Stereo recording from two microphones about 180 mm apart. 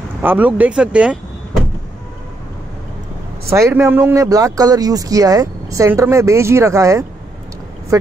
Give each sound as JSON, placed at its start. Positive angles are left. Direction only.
{"t": 0.2, "sound": "speech", "side_deg": -10}
{"t": 3.4, "sound": "speech", "side_deg": -15}